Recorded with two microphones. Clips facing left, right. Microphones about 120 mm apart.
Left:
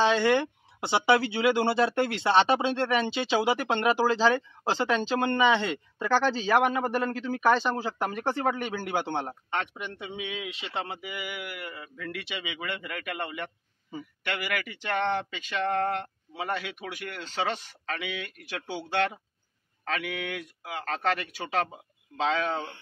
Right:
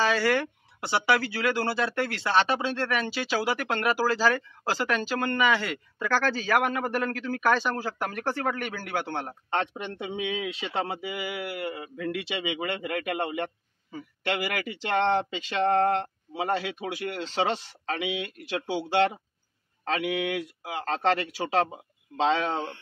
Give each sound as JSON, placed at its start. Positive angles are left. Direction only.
{"t": 0.0, "sound": "speech", "side_deg": 20}
{"t": 9.5, "sound": "speech", "side_deg": -30}
{"t": 19.8, "sound": "speech", "side_deg": -25}